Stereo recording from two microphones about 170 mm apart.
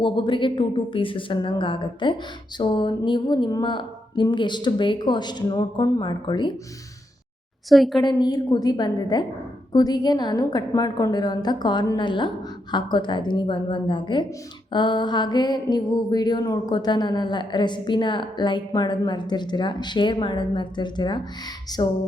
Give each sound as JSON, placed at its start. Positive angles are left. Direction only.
{"t": 0.0, "sound": "a woman's voice", "side_deg": 30}
{"t": 7.7, "sound": "a woman's voice", "side_deg": 0}
{"t": 8.0, "sound": "a woman's voice", "side_deg": 25}